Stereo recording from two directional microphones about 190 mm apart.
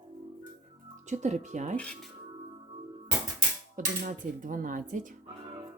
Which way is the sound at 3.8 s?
45° right (ahead or behind).